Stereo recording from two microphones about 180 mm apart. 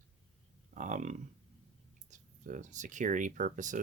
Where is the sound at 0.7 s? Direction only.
45° right (ahead or behind).